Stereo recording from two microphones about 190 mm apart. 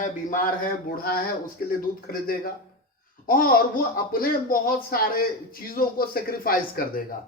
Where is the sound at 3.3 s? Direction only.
50° left (ahead or behind).